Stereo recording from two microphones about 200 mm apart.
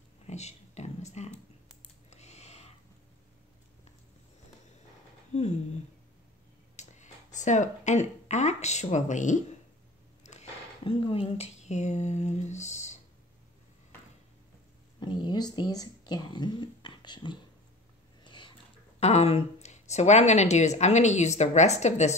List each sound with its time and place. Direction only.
0.3 s speech: 35° left (ahead or behind)
2.0 s a sound: 35° left (ahead or behind)
5.3 s speech: 35° left (ahead or behind)
6.8 s speech: 35° left (ahead or behind)
15.0 s speech: 25° left (ahead or behind)
18.2 s a sound: 25° left (ahead or behind)
18.9 s speech: 30° left (ahead or behind)